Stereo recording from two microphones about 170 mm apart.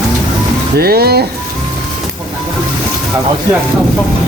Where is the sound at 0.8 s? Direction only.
65° right (ahead or behind).